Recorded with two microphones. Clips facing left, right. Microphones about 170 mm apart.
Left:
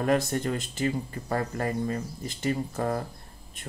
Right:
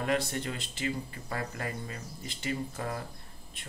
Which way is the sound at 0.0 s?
45° left (ahead or behind).